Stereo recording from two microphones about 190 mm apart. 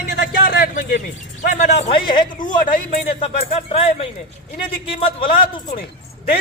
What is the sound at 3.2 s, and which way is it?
Speech, 30° left (ahead or behind).